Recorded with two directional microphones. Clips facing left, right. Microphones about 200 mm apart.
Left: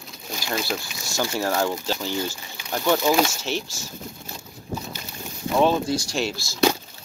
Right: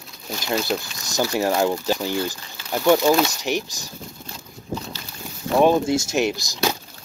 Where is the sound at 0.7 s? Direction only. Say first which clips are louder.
Right 3 dB; 15° right (ahead or behind).